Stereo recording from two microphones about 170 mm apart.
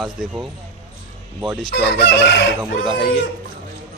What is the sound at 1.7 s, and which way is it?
Chicken, 80° left.